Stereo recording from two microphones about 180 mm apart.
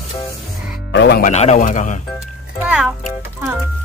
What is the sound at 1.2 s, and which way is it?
Speech, 40° left (ahead or behind).